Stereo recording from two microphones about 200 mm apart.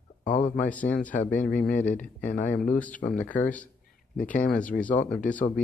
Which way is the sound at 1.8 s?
40° left (ahead or behind).